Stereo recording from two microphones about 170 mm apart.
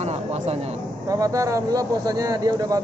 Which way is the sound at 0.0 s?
40° right (ahead or behind).